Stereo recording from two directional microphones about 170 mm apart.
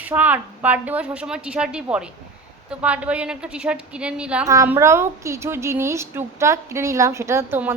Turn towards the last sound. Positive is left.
turn(degrees=-15)  # may be behind; listen again after turning